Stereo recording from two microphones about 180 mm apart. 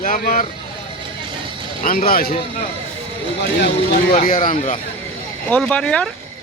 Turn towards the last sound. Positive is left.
turn(degrees=5)  # may be behind; listen again after turning